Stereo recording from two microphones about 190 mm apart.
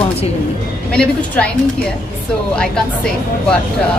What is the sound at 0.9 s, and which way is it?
Speech, 5° left (ahead or behind).